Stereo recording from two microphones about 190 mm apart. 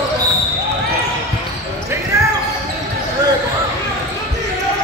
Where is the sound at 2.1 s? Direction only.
15° right (ahead or behind).